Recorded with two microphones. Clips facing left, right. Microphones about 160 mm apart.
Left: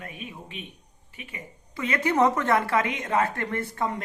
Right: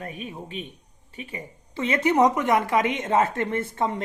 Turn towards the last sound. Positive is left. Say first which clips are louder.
# right 3 dB
turn(degrees=-25)  # may be behind; listen again after turning